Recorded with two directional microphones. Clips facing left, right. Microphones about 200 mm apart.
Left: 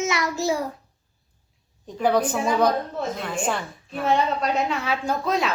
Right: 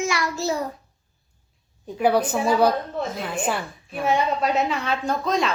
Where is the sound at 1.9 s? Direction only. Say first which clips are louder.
Right 1 dB; 10° right (ahead or behind).